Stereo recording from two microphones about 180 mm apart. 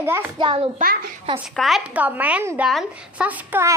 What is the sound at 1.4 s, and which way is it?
A woman's voice, centre (ahead or behind).